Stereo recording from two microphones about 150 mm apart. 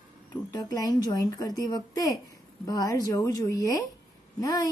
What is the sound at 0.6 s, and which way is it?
Speech, 25° left (ahead or behind).